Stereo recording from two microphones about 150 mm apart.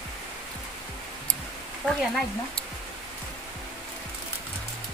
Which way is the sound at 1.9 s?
5° left (ahead or behind).